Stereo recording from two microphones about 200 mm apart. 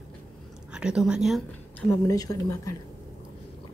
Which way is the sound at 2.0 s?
15° left (ahead or behind).